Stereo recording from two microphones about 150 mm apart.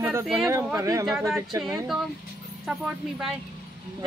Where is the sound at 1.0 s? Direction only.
Centre (ahead or behind).